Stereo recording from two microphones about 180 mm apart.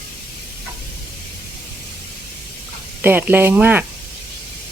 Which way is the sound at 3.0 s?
10° right (ahead or behind).